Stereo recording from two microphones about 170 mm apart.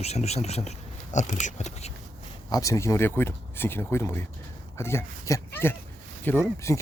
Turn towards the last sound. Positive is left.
turn(degrees=15)  # may be behind; listen again after turning